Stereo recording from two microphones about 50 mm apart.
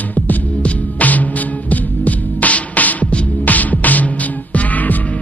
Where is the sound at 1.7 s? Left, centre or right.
Left.